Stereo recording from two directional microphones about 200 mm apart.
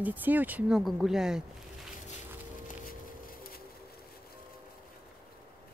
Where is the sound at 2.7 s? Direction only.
45° left (ahead or behind).